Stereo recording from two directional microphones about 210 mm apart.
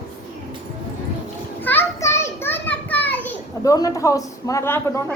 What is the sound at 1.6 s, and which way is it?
Children playing, 10° left (ahead or behind).